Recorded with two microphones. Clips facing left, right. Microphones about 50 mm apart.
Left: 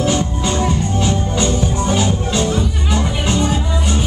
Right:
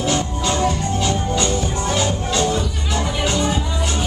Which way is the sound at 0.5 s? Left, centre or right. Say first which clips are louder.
Even; centre.